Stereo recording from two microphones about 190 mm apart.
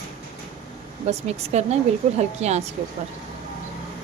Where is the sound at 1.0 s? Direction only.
35° right (ahead or behind).